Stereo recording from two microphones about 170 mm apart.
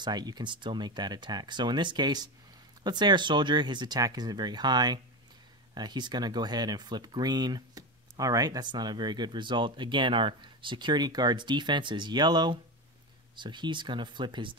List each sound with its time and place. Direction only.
0.0 s speech: 25° right (ahead or behind)